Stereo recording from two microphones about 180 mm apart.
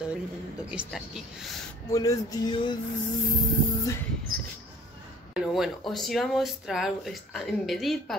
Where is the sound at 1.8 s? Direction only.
20° left (ahead or behind).